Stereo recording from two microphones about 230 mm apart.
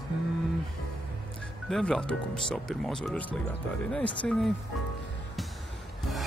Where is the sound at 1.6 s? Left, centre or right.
Centre.